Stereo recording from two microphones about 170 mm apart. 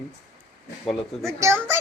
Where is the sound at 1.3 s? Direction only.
15° right (ahead or behind).